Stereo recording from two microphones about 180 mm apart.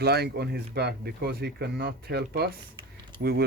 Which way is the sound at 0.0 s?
65° right (ahead or behind).